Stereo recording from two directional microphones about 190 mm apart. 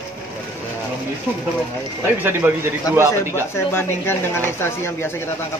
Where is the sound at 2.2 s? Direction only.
10° right (ahead or behind).